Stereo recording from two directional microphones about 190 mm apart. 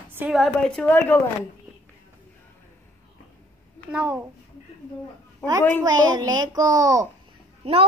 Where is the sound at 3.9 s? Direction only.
10° right (ahead or behind).